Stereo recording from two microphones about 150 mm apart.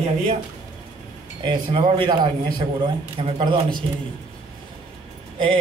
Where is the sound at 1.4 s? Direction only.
30° right (ahead or behind).